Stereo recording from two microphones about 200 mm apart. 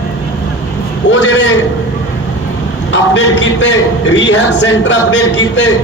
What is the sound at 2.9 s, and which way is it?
A man's voice, 65° left (ahead or behind).